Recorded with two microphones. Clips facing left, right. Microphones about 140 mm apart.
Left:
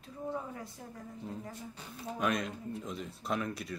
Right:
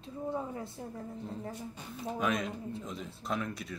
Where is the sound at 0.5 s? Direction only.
30° right (ahead or behind).